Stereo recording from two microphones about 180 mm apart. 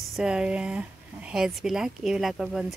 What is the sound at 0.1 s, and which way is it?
Speech, 5° right (ahead or behind).